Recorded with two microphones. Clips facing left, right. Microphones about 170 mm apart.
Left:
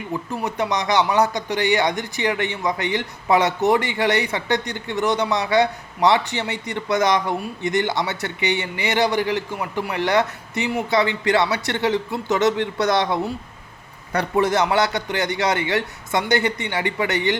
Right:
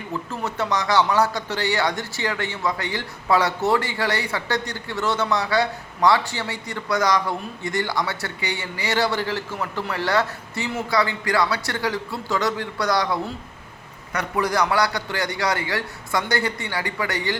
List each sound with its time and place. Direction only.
0.3 s speech: 15° left (ahead or behind)